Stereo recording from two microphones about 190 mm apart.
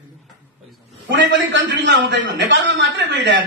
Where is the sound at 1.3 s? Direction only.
70° right (ahead or behind).